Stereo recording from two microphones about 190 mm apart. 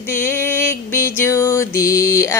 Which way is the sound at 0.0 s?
10° left (ahead or behind).